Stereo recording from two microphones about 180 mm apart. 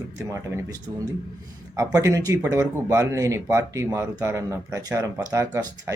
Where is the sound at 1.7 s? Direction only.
15° right (ahead or behind).